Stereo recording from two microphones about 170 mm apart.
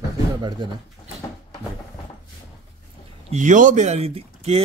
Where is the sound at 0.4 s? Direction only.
25° right (ahead or behind).